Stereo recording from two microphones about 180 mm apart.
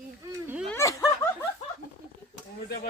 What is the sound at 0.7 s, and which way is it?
Snicker, 15° left (ahead or behind).